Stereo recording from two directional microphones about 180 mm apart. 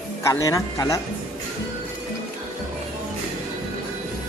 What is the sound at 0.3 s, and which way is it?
Speech, 20° left (ahead or behind).